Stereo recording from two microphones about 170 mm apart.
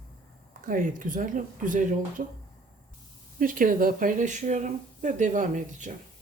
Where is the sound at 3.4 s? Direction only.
55° right (ahead or behind).